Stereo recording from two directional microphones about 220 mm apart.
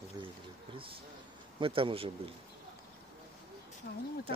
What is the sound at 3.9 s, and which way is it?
Speech, 45° left (ahead or behind).